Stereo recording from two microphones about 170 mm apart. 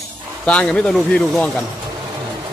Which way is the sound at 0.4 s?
5° left (ahead or behind).